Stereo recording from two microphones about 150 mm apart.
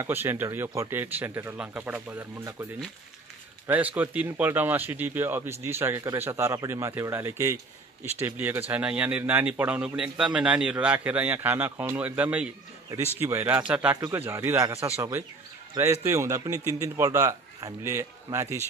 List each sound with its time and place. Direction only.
0.0 s a man's voice: 15° right (ahead or behind)